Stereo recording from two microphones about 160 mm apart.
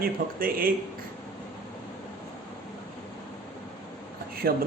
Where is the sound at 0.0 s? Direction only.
65° right (ahead or behind).